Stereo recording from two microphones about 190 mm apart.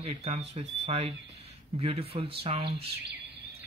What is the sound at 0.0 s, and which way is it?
Speech, 30° right (ahead or behind).